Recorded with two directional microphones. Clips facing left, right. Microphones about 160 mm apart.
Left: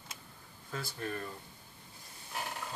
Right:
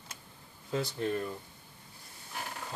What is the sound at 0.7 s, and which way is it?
Speech, 25° right (ahead or behind).